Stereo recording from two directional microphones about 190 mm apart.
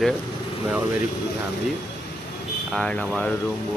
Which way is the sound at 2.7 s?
5° left (ahead or behind).